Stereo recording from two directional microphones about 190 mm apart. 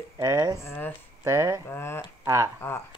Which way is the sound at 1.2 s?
15° right (ahead or behind).